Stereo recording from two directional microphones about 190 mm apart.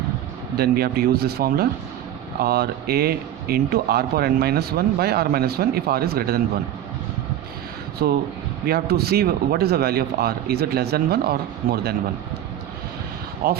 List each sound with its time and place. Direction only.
0.5 s speech: 55° right (ahead or behind)
8.0 s speech: 55° right (ahead or behind)
13.4 s speech: 50° right (ahead or behind)